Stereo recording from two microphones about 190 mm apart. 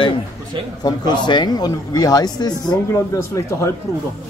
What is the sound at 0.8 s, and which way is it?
Speech, 20° left (ahead or behind).